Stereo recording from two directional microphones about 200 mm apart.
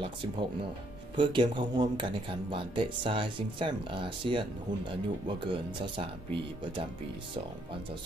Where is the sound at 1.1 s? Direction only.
25° right (ahead or behind).